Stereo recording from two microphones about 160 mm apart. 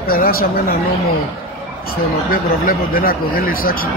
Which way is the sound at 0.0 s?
65° left (ahead or behind).